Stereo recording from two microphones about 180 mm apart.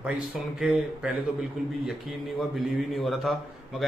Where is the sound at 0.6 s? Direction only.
5° right (ahead or behind).